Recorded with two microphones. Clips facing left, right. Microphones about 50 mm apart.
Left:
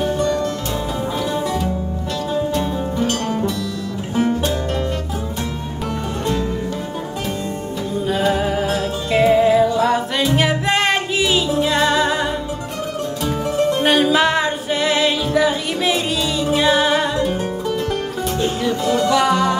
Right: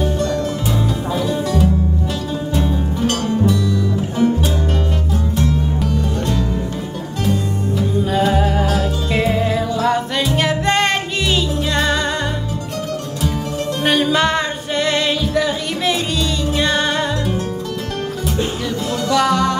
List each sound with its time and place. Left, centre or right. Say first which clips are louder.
0.0 s music: left 1 dB; centre
2.5 s music: right 1 dB; centre
8.0 s music: right 1 dB; centre
13.8 s music: right 2 dB; centre
18.9 s music: even; centre